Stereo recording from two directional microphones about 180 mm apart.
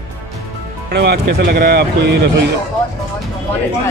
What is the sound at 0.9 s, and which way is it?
Speech, 60° right (ahead or behind).